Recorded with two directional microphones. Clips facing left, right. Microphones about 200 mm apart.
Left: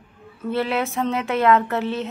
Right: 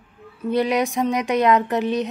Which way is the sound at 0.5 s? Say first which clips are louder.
Right 3 dB; 15° right (ahead or behind).